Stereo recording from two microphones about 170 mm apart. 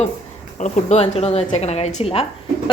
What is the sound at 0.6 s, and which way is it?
A woman's voice, 40° left (ahead or behind).